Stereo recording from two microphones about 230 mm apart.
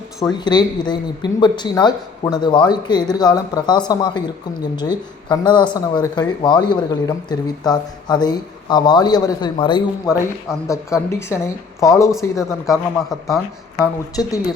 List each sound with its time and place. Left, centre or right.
0.2 s speech: centre
5.3 s speech: centre
11.3 s speech: centre
13.2 s speech: centre
14.2 s speech: centre